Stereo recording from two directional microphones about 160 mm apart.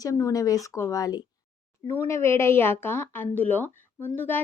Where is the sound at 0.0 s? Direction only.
20° left (ahead or behind).